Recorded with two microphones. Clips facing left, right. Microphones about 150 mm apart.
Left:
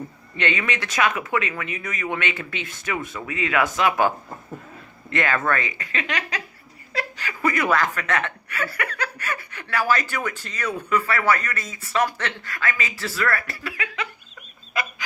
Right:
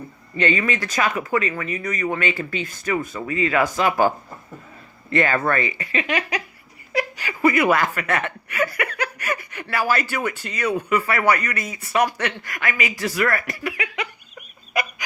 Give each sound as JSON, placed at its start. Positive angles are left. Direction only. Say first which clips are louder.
{"t": 0.4, "sound": "speech", "louder": "right 4 dB", "side_deg": -5}
{"t": 5.5, "sound": "speech", "louder": "right 2 dB", "side_deg": -10}